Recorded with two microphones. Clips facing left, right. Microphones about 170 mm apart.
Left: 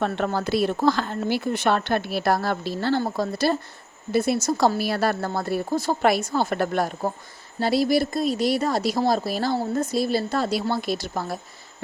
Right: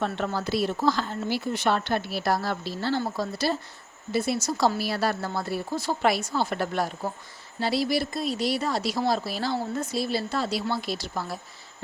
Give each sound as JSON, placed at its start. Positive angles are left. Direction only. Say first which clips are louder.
{"t": 0.0, "sound": "speech", "louder": "left 4 dB", "side_deg": 55}